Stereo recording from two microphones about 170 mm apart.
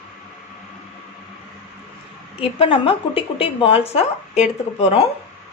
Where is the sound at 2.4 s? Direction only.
35° left (ahead or behind).